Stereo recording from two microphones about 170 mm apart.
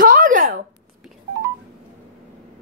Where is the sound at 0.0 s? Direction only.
55° right (ahead or behind).